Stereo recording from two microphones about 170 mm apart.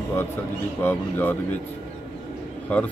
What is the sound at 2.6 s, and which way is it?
Speech, 10° left (ahead or behind).